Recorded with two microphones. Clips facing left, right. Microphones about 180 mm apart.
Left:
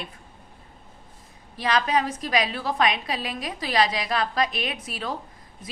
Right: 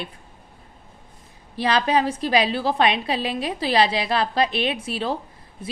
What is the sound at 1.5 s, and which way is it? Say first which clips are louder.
A woman's voice: right 3 dB; 30° right (ahead or behind).